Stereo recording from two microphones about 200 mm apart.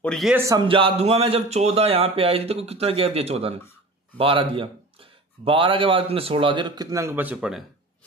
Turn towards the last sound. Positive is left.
turn(degrees=-5)  # may be behind; listen again after turning